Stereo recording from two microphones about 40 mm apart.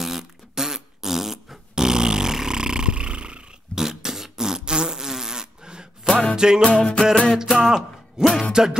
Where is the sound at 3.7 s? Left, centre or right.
Centre.